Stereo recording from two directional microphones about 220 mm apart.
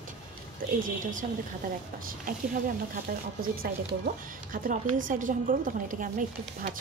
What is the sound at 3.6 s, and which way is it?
Speech, 40° right (ahead or behind).